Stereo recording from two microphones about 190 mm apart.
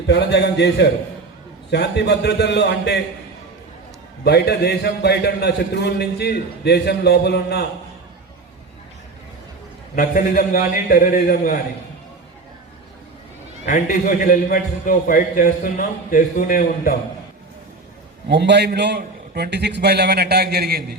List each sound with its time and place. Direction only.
0.1 s a man's voice: 60° left (ahead or behind)
4.2 s a man's voice: 55° left (ahead or behind)
9.9 s a man's voice: 45° left (ahead or behind)
13.7 s a man's voice: 40° left (ahead or behind)
18.3 s a man's voice: 65° right (ahead or behind)